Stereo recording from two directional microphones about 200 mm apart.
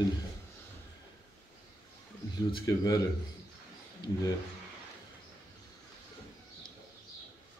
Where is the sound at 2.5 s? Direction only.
15° left (ahead or behind).